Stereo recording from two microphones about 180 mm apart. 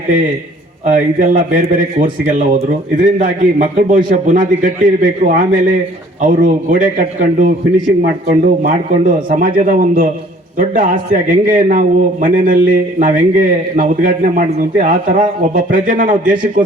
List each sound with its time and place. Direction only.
0.9 s a man's voice: 45° right (ahead or behind)